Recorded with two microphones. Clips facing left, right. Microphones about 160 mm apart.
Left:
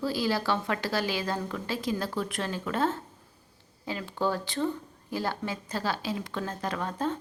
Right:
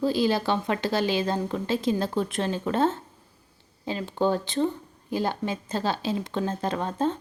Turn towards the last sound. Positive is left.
turn(degrees=-25)  # may be behind; listen again after turning